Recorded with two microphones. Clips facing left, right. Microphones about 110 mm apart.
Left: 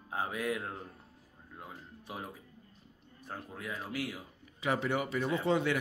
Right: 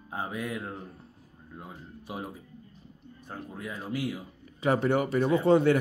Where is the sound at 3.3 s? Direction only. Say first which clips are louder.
Right 3 dB; centre (ahead or behind).